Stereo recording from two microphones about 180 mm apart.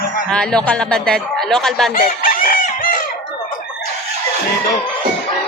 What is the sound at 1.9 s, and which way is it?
Chicken, 50° left (ahead or behind).